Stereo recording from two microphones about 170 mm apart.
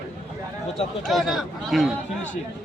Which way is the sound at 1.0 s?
Centre (ahead or behind).